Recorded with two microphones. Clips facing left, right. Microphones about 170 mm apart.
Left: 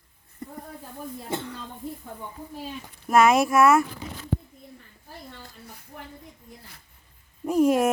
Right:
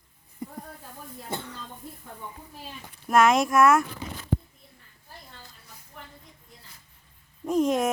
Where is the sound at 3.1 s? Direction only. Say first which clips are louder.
Left 2 dB; 5° left (ahead or behind).